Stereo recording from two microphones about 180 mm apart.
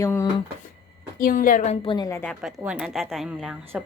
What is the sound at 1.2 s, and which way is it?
A woman's voice, 50° left (ahead or behind).